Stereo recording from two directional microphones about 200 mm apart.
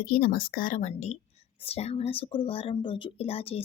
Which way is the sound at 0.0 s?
45° left (ahead or behind).